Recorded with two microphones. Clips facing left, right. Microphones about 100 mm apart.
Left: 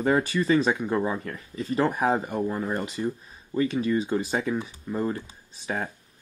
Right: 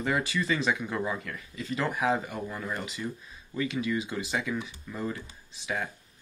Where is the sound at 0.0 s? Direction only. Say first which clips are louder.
Left 6 dB; 35° left (ahead or behind).